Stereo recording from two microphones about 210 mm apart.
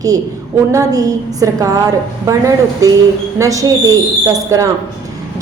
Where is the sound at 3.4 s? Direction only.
15° right (ahead or behind).